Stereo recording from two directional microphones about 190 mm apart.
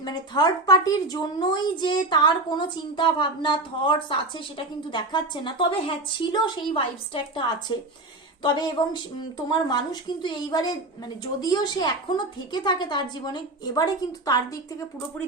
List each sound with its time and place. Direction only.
0.0 s a woman's voice: 20° left (ahead or behind)